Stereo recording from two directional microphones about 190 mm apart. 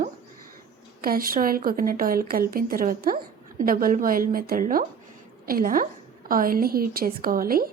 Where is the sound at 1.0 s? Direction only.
50° right (ahead or behind).